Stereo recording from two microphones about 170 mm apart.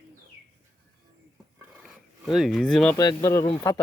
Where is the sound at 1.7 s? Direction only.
Centre (ahead or behind).